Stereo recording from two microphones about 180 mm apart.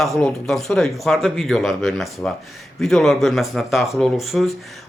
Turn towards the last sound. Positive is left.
turn(degrees=0)  # may be behind; listen again after turning